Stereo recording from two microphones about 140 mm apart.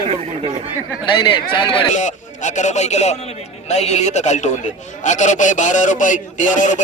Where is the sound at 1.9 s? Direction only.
60° left (ahead or behind).